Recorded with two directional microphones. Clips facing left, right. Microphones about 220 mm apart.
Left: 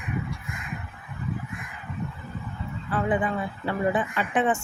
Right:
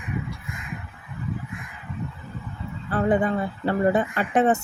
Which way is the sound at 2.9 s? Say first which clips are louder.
Right 4 dB; 40° right (ahead or behind).